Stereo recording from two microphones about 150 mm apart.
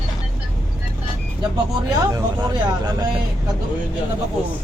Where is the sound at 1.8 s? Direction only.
25° right (ahead or behind).